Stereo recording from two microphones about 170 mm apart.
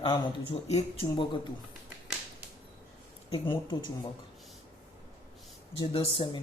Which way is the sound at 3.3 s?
30° left (ahead or behind).